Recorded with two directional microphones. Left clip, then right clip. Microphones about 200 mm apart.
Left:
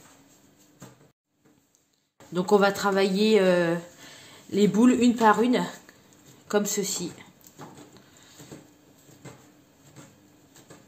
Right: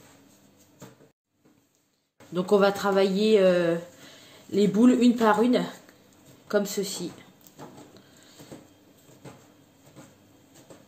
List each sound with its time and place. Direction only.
2.3 s a woman's voice: 15° left (ahead or behind)